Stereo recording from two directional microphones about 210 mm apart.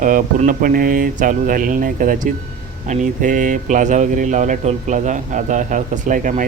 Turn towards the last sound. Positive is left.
turn(degrees=-40)  # may be behind; listen again after turning